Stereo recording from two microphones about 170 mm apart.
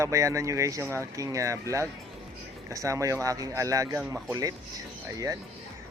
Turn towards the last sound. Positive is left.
turn(degrees=-20)  # may be behind; listen again after turning